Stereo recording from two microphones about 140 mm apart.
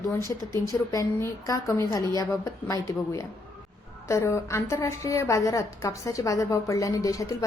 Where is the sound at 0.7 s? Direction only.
25° left (ahead or behind).